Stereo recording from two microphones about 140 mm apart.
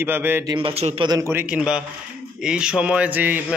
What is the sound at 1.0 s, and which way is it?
Speech, 30° right (ahead or behind).